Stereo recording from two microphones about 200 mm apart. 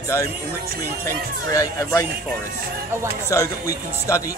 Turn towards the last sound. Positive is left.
turn(degrees=15)  # may be behind; listen again after turning